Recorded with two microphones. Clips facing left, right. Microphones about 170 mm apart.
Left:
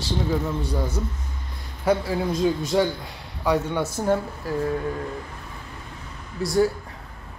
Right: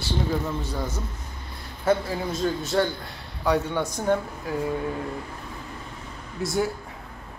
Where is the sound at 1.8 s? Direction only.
10° left (ahead or behind).